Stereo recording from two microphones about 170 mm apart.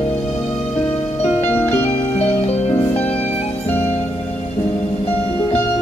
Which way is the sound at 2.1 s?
35° left (ahead or behind).